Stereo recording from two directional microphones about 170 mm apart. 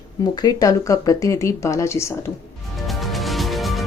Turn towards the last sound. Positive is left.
turn(degrees=0)  # may be behind; listen again after turning